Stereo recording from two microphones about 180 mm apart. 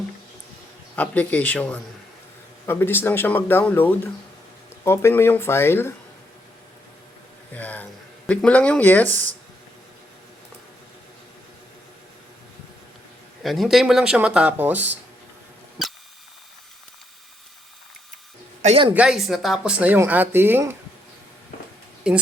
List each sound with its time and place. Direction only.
0.9 s speech: 10° left (ahead or behind)
7.5 s speech: 10° left (ahead or behind)
13.4 s speech: centre (ahead or behind)
18.6 s a woman's voice: 30° right (ahead or behind)
18.9 s speech: 5° right (ahead or behind)
22.0 s speech: 5° right (ahead or behind)